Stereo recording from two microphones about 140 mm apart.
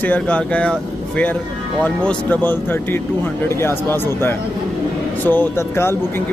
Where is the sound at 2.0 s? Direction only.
10° left (ahead or behind).